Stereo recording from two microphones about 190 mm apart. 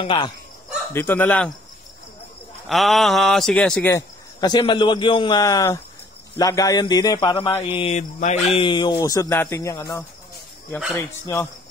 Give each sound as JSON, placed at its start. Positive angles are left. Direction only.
{"t": 0.0, "sound": "a man's voice", "side_deg": 25}
{"t": 0.9, "sound": "speech", "side_deg": 10}
{"t": 2.7, "sound": "speech", "side_deg": 0}
{"t": 3.9, "sound": "a man's voice", "side_deg": 20}